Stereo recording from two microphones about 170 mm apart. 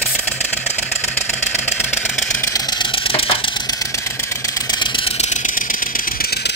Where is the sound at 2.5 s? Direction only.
30° left (ahead or behind).